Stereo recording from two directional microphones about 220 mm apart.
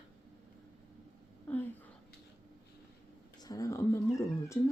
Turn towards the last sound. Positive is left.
turn(degrees=15)  # may be behind; listen again after turning